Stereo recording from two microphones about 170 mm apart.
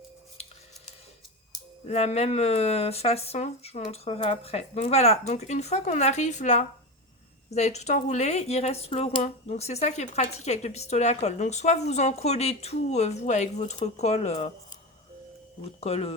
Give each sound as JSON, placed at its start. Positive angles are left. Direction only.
{"t": 1.9, "sound": "speech", "side_deg": 40}
{"t": 15.8, "sound": "speech", "side_deg": 35}